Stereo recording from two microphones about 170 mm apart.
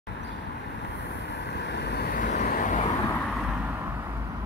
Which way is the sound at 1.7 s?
80° left.